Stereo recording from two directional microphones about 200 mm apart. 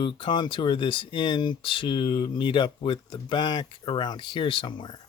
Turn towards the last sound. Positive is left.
turn(degrees=25)  # may be behind; listen again after turning